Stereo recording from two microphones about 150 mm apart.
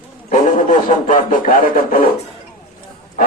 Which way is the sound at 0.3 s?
55° left (ahead or behind).